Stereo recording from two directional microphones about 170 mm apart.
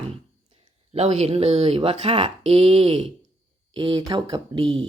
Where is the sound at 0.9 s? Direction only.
40° right (ahead or behind).